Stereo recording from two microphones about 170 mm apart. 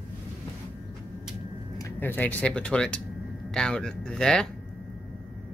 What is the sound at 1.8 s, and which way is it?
Speech, 10° left (ahead or behind).